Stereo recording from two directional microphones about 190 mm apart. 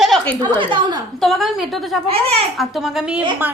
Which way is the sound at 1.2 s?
Centre (ahead or behind).